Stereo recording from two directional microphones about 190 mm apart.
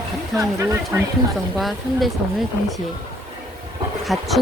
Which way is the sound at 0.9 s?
15° right (ahead or behind).